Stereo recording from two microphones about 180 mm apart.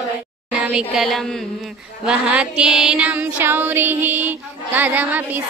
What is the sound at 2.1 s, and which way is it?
Child singing, 5° right (ahead or behind).